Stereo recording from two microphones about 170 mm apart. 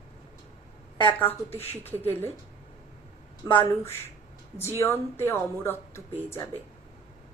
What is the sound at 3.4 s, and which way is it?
Speech, 30° left (ahead or behind).